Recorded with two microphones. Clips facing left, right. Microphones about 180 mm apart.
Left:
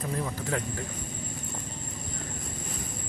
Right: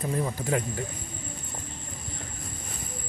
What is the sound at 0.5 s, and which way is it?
Speech, 10° right (ahead or behind).